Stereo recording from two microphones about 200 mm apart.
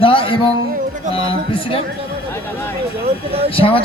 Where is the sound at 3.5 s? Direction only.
25° left (ahead or behind).